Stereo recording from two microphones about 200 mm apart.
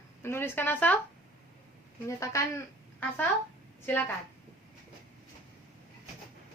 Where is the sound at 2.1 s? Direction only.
15° left (ahead or behind).